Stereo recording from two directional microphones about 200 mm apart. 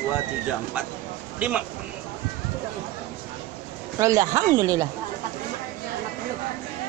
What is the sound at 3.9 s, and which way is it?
Speech, 15° right (ahead or behind).